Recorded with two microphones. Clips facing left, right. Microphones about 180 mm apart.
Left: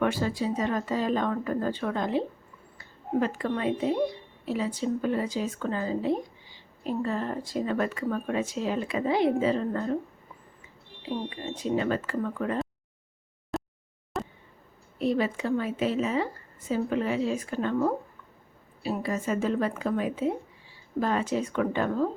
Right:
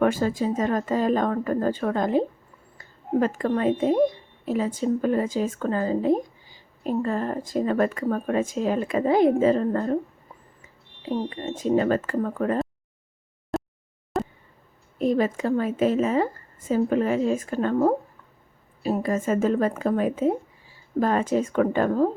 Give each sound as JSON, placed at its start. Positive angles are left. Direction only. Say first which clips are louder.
{"t": 0.0, "sound": "speech", "louder": "right 5 dB", "side_deg": -45}
{"t": 13.5, "sound": "a sound", "louder": "right 5 dB", "side_deg": 0}
{"t": 14.9, "sound": "speech", "louder": "right 4 dB", "side_deg": -45}